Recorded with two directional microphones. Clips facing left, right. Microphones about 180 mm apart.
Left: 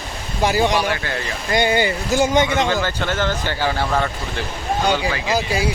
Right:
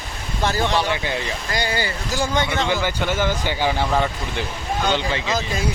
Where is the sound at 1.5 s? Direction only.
20° left (ahead or behind).